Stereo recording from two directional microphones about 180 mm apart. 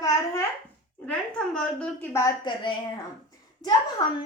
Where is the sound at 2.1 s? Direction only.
20° left (ahead or behind).